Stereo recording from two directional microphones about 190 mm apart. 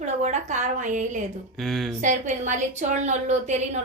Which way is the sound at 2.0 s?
40° right (ahead or behind).